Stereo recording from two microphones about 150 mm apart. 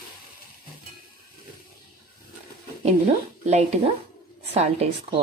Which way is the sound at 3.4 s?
45° right (ahead or behind).